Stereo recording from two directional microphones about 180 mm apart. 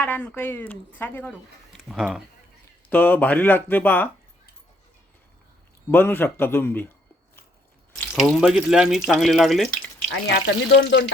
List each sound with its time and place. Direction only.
0.0 s speech: 10° left (ahead or behind)
1.3 s speech: 5° right (ahead or behind)
2.9 s speech: 10° left (ahead or behind)
5.9 s speech: 10° left (ahead or behind)
8.1 s speech: centre (ahead or behind)
10.1 s speech: 90° left
10.8 s speech: 70° left (ahead or behind)